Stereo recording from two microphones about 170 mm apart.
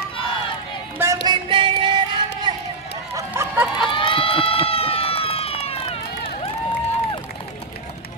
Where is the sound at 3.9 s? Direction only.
30° left (ahead or behind).